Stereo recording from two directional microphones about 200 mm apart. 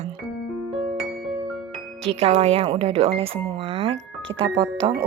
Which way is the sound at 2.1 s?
30° right (ahead or behind).